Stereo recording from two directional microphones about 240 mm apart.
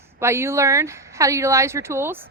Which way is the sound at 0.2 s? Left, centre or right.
Centre.